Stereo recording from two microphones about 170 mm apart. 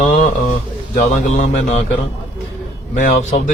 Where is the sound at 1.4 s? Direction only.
45° left (ahead or behind).